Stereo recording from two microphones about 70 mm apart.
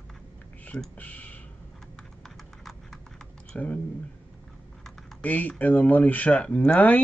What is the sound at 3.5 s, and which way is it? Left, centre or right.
Speech, left.